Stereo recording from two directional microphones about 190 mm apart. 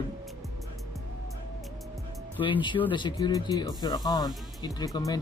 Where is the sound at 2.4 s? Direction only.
25° left (ahead or behind).